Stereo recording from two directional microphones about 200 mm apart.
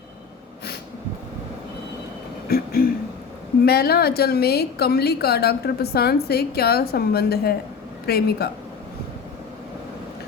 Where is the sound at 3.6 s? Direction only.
50° left (ahead or behind).